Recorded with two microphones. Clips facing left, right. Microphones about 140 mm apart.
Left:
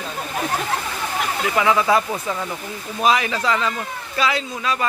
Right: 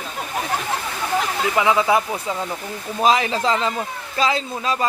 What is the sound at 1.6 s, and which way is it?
Speech, 20° right (ahead or behind).